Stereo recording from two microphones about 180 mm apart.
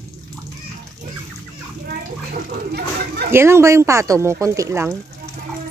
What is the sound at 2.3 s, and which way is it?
Speech, 60° right (ahead or behind).